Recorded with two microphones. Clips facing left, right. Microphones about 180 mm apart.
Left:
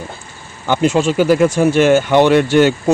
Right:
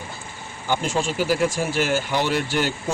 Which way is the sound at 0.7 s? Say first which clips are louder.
Left 9 dB; 75° left (ahead or behind).